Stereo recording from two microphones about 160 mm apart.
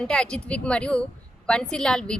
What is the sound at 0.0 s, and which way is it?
A woman's voice, 5° left (ahead or behind).